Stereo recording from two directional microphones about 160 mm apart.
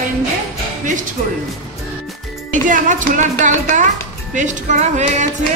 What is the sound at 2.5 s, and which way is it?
Speech, 55° right (ahead or behind).